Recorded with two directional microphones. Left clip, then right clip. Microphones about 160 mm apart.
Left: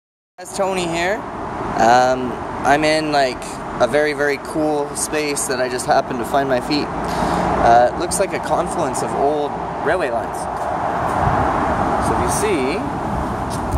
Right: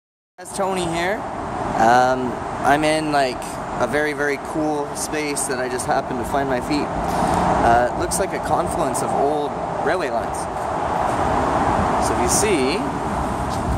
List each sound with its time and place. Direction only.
0.6 s speech: 10° right (ahead or behind)
9.4 s vehicle: 15° right (ahead or behind)
12.0 s speech: 15° right (ahead or behind)